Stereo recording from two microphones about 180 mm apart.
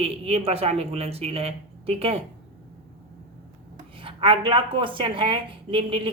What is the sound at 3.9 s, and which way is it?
A woman's voice, 30° right (ahead or behind).